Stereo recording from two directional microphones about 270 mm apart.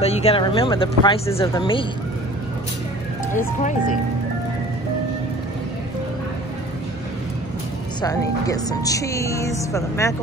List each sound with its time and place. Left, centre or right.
0.0 s speech: left
8.0 s speech: centre